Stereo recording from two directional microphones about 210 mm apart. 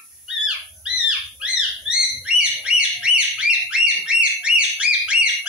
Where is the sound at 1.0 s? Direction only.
5° right (ahead or behind).